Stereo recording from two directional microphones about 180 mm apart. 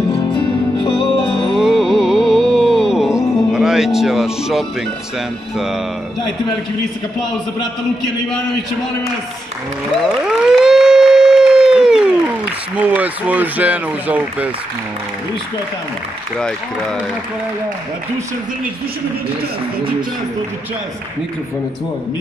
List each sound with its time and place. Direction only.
0.3 s music: 25° left (ahead or behind)
1.2 s music: 5° left (ahead or behind)
10.2 s a sound: 5° right (ahead or behind)
12.8 s speech: 10° right (ahead or behind)